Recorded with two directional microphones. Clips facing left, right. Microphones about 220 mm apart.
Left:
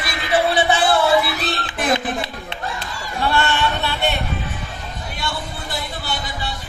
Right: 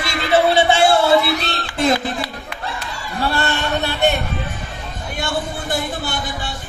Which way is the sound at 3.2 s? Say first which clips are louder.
Left 1 dB; 40° right (ahead or behind).